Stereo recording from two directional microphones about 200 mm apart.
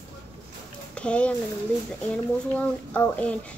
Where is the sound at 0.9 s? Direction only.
5° left (ahead or behind).